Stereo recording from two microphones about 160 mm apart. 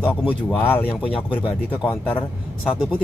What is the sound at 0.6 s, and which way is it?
Speech, 10° left (ahead or behind).